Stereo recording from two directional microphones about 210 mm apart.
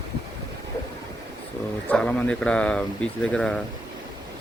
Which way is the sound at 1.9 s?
5° left (ahead or behind).